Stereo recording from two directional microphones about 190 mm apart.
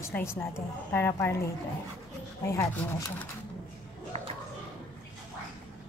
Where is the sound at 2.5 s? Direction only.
15° left (ahead or behind).